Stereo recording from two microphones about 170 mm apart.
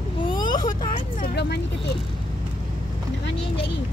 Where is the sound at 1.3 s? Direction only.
75° left (ahead or behind).